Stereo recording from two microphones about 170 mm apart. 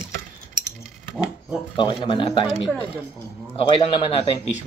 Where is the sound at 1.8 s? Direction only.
30° left (ahead or behind).